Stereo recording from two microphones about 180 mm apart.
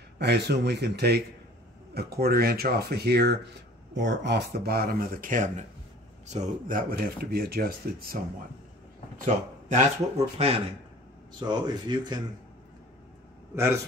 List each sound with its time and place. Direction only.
0.2 s speech: 65° right (ahead or behind)
9.2 s speech: 40° right (ahead or behind)
11.3 s speech: 25° right (ahead or behind)